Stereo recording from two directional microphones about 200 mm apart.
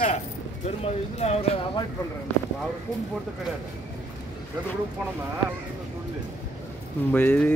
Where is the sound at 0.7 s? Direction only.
35° left (ahead or behind).